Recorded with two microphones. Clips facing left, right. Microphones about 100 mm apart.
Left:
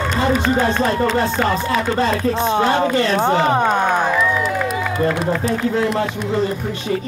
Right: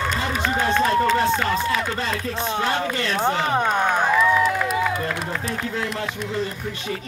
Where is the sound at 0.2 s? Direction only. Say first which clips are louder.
Left 7 dB; 40° left (ahead or behind).